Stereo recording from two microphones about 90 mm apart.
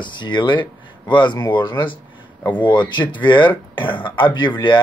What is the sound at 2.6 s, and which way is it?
Speech, 60° left (ahead or behind).